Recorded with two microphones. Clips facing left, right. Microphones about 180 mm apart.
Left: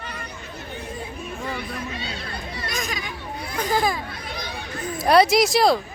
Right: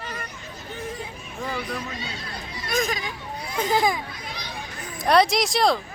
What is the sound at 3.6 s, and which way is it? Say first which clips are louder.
Speech: right 1 dB; 20° right (ahead or behind).